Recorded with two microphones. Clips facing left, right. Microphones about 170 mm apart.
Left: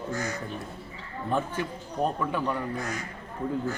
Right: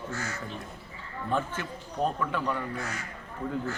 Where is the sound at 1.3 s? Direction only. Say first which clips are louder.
Left 2 dB; 15° left (ahead or behind).